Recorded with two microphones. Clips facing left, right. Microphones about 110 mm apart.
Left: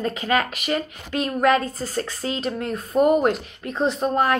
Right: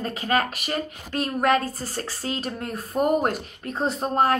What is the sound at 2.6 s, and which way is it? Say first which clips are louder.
A woman's voice: left 5 dB; 40° right (ahead or behind).